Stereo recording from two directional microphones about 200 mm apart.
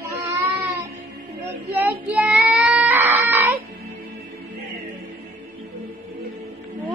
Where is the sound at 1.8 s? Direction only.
10° right (ahead or behind).